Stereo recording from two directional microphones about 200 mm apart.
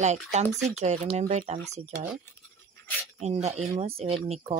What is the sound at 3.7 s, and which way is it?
Speech, 30° right (ahead or behind).